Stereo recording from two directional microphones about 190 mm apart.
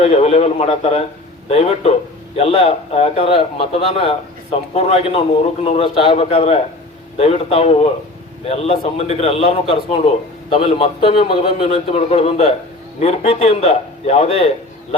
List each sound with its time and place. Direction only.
0.1 s speech: 35° left (ahead or behind)